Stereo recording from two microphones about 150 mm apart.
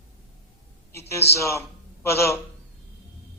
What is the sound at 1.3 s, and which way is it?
A man's voice, 20° left (ahead or behind).